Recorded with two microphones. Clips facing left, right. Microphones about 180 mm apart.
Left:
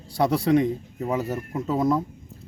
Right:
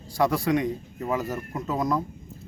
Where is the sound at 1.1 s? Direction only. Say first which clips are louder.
Left 2 dB; 25° left (ahead or behind).